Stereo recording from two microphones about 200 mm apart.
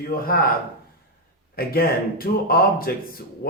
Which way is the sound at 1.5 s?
50° left (ahead or behind).